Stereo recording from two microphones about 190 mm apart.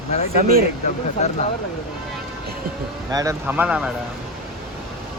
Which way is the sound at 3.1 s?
15° right (ahead or behind).